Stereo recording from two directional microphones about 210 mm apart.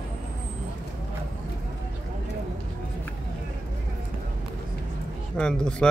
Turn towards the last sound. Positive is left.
turn(degrees=5)  # may be behind; listen again after turning